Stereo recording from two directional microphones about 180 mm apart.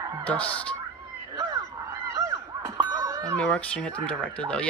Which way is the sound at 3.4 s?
5° left (ahead or behind).